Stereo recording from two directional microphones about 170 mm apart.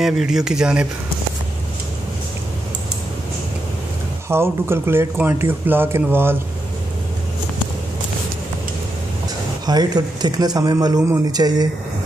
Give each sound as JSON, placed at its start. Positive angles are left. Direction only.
{"t": 0.0, "sound": "speech", "side_deg": -5}
{"t": 4.3, "sound": "speech", "side_deg": -15}
{"t": 9.7, "sound": "speech", "side_deg": -25}